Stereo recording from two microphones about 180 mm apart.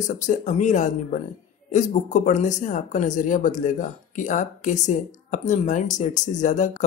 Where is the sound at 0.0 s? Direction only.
45° left (ahead or behind).